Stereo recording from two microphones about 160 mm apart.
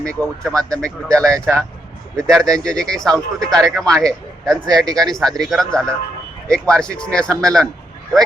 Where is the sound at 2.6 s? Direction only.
5° left (ahead or behind).